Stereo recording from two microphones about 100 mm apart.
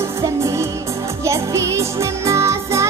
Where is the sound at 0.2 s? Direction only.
30° right (ahead or behind).